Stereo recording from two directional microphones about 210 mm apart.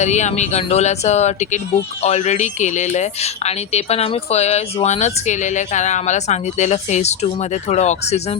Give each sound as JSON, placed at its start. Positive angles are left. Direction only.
{"t": 0.0, "sound": "speech", "side_deg": 35}